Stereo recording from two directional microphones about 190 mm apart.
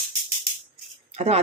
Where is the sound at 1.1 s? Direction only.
35° right (ahead or behind).